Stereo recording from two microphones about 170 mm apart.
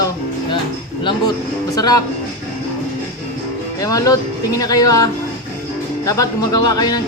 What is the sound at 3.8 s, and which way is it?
Speech, 20° left (ahead or behind).